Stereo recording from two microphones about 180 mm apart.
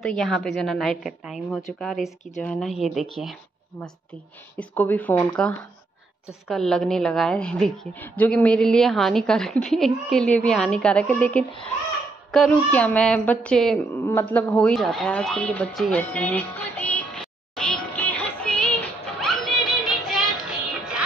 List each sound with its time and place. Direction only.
0.0 s a woman's voice: 5° left (ahead or behind)
4.6 s a woman's voice: 10° left (ahead or behind)
12.3 s a sound: 5° left (ahead or behind)